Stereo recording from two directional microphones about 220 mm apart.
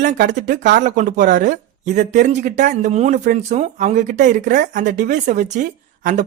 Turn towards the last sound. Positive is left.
turn(degrees=-35)  # may be behind; listen again after turning